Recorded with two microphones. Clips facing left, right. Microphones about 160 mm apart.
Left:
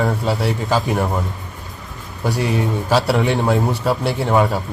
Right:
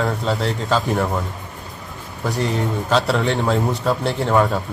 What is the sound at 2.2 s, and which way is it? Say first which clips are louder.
A man's voice: left 2 dB; 10° left (ahead or behind).